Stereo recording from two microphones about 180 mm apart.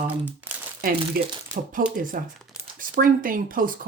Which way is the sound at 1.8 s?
50° right (ahead or behind).